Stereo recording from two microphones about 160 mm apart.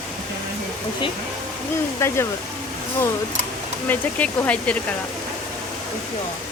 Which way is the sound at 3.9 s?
10° left (ahead or behind).